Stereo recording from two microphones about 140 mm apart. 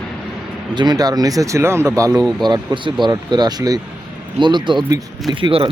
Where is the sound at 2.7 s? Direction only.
35° right (ahead or behind).